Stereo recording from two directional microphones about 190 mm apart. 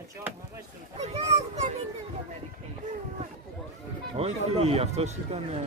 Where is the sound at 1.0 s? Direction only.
35° right (ahead or behind).